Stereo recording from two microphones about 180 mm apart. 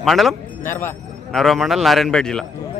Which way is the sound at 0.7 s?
15° left (ahead or behind).